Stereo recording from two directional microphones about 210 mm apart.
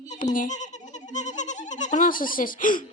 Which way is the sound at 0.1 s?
40° left (ahead or behind).